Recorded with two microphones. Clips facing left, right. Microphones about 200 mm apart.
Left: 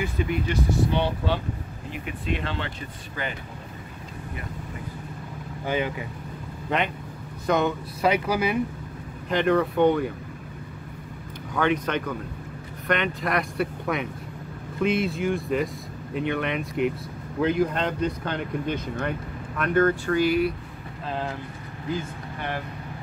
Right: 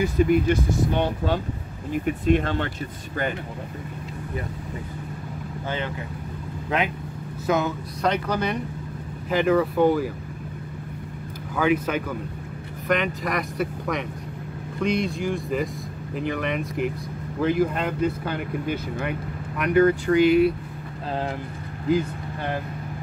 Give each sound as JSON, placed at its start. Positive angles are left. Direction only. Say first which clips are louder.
{"t": 0.0, "sound": "speech", "louder": "right 7 dB", "side_deg": -45}
{"t": 6.7, "sound": "speech", "louder": "right 1 dB", "side_deg": 0}
{"t": 8.0, "sound": "speech", "louder": "left 1 dB", "side_deg": 10}
{"t": 9.3, "sound": "speech", "louder": "right 1 dB", "side_deg": -5}
{"t": 11.5, "sound": "speech", "louder": "right 2 dB", "side_deg": -5}